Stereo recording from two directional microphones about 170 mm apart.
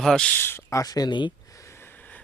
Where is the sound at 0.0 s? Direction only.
5° left (ahead or behind).